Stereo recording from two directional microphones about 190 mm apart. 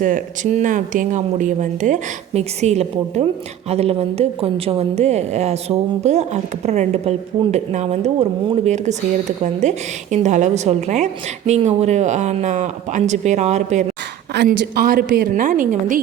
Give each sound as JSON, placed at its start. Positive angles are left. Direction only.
{"t": 0.0, "sound": "a woman's voice", "side_deg": -45}
{"t": 14.6, "sound": "a woman's voice", "side_deg": -55}